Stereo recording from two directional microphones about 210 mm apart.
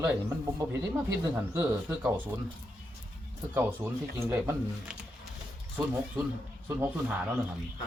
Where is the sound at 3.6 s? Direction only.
10° right (ahead or behind).